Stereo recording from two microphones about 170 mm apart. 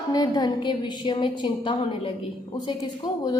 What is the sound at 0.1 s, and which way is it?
A woman's voice, 25° left (ahead or behind).